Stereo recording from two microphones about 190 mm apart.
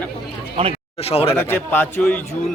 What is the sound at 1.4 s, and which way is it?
Speech, 10° left (ahead or behind).